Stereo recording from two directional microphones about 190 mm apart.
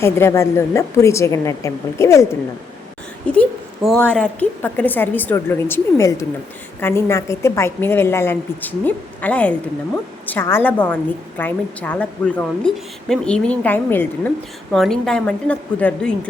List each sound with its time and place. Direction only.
0.0 s a woman's voice: 15° left (ahead or behind)
3.3 s a woman's voice: 5° left (ahead or behind)